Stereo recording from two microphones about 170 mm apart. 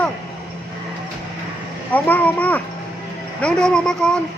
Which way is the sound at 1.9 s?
10° left (ahead or behind).